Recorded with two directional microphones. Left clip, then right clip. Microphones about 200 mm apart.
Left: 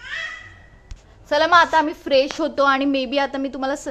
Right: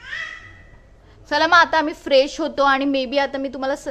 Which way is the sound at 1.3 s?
5° left (ahead or behind).